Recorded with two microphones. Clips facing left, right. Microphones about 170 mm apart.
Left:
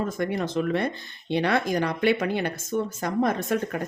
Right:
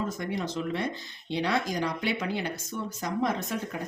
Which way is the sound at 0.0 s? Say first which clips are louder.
Left 5 dB; 55° left (ahead or behind).